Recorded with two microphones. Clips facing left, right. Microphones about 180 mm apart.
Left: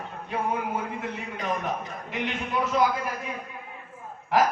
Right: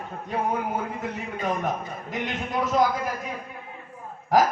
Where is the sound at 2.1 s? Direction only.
40° right (ahead or behind).